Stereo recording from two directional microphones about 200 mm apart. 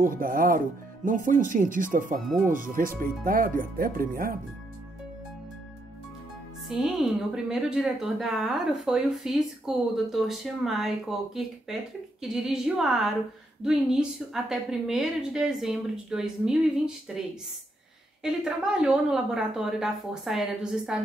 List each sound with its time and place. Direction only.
0.0 s speech: 45° right (ahead or behind)
6.7 s a woman's voice: centre (ahead or behind)
18.2 s a woman's voice: 5° right (ahead or behind)